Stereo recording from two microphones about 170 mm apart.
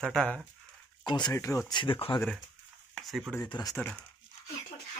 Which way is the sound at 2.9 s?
Centre (ahead or behind).